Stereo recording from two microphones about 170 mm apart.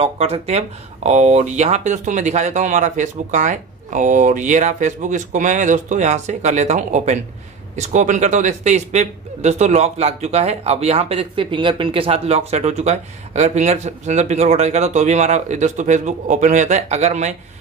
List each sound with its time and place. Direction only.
0.0 s a man's voice: 35° right (ahead or behind)